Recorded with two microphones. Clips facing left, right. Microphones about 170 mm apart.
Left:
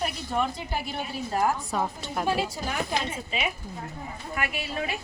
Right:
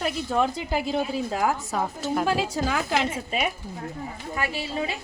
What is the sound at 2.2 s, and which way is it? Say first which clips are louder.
Speech: even; 90° right.